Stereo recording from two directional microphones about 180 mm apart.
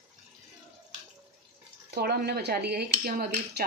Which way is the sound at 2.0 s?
65° right (ahead or behind).